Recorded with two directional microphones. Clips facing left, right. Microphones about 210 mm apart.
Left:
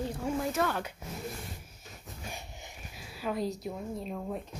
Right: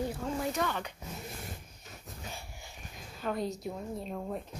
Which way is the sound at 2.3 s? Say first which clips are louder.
Left 2 dB; 20° left (ahead or behind).